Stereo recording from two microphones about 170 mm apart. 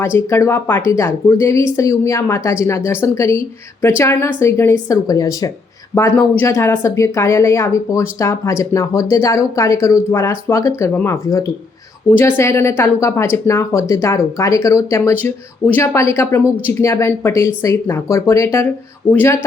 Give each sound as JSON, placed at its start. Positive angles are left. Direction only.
{"t": 0.0, "sound": "speech", "side_deg": 15}